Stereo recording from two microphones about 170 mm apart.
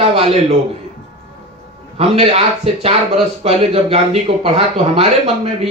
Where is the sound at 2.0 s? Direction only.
40° right (ahead or behind).